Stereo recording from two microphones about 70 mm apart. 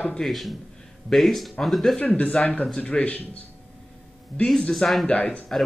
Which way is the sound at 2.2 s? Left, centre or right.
Centre.